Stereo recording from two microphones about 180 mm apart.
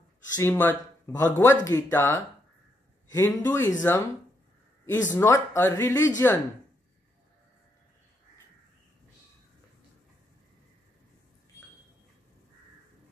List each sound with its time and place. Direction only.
0.4 s speech: 10° left (ahead or behind)
5.1 s speech: 15° left (ahead or behind)